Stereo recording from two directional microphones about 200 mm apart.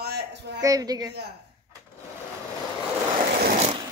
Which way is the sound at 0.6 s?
20° right (ahead or behind).